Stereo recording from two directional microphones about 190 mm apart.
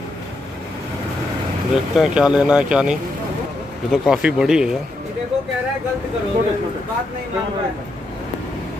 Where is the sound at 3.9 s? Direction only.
5° right (ahead or behind).